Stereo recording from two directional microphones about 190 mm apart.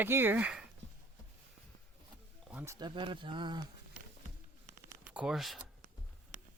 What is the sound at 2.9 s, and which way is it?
Speech, 25° right (ahead or behind).